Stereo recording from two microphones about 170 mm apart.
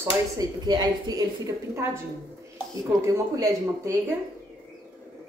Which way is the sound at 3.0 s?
20° right (ahead or behind).